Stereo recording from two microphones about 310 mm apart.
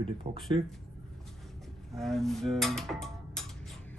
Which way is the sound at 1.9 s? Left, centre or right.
Centre.